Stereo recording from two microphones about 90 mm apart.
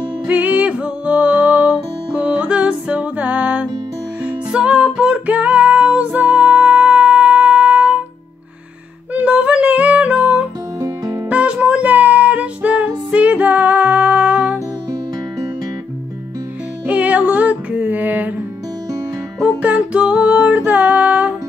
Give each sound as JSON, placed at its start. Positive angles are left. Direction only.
{"t": 0.3, "sound": "music", "side_deg": -15}
{"t": 9.1, "sound": "music", "side_deg": -15}
{"t": 10.8, "sound": "music", "side_deg": -30}
{"t": 11.2, "sound": "music", "side_deg": -15}
{"t": 16.8, "sound": "music", "side_deg": -15}
{"t": 19.4, "sound": "music", "side_deg": -15}